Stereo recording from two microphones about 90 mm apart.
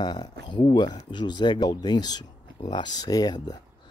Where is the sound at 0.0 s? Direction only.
55° left (ahead or behind).